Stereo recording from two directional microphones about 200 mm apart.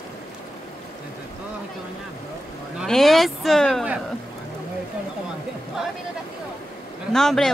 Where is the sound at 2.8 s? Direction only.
Centre (ahead or behind).